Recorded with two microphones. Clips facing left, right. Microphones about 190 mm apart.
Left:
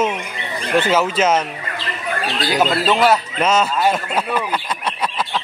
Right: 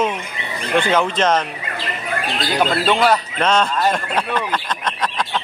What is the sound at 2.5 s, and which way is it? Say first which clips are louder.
Speech: left 1 dB; 5° left (ahead or behind).